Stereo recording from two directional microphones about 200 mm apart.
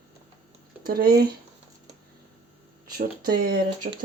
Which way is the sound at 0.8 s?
45° right (ahead or behind).